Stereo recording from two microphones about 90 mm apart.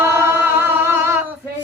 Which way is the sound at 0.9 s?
25° right (ahead or behind).